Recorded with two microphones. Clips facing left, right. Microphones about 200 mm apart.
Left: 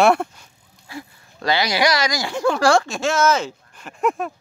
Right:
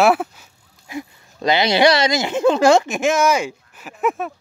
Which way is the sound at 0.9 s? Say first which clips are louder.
Right 5 dB; 20° right (ahead or behind).